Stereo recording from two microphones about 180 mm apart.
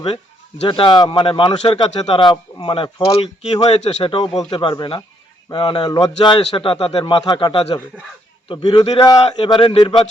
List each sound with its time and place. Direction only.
0.7 s a man's voice: 25° left (ahead or behind)